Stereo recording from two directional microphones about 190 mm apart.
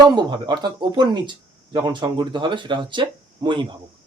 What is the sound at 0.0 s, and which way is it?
Speech, 20° right (ahead or behind).